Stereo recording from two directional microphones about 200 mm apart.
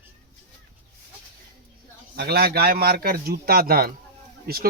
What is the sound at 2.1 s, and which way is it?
A man's voice, 50° right (ahead or behind).